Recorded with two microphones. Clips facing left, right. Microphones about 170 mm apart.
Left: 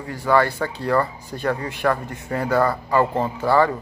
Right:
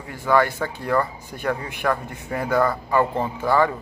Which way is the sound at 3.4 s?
15° right (ahead or behind).